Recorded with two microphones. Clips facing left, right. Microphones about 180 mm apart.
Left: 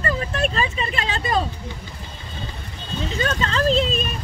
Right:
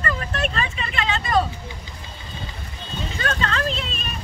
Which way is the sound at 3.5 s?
35° left (ahead or behind).